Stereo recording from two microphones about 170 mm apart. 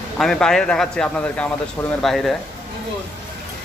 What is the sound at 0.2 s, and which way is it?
Speech, centre (ahead or behind).